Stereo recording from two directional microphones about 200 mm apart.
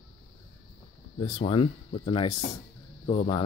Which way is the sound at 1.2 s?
30° left (ahead or behind).